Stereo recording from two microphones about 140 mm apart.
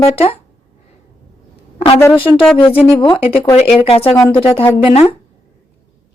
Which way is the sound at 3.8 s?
45° left (ahead or behind).